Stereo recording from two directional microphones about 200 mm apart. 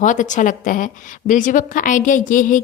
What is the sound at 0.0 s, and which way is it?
A woman's voice, 40° left (ahead or behind).